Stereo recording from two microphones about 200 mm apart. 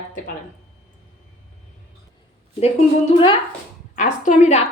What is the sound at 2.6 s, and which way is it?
A woman's voice, 30° left (ahead or behind).